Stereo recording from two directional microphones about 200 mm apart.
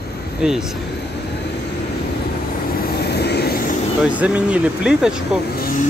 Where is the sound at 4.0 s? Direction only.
5° right (ahead or behind).